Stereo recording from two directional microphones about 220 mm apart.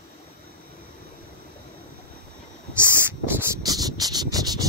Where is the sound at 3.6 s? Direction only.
15° right (ahead or behind).